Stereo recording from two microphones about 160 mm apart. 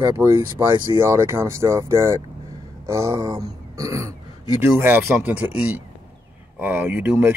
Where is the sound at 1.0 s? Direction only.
15° right (ahead or behind).